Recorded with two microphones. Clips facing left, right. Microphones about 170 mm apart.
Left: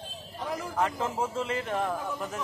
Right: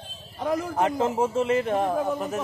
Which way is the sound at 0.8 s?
25° right (ahead or behind).